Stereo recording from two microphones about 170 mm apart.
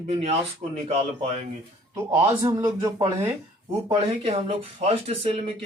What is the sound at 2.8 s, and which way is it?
Speech, 30° right (ahead or behind).